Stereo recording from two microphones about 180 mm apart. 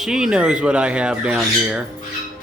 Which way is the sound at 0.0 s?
5° right (ahead or behind).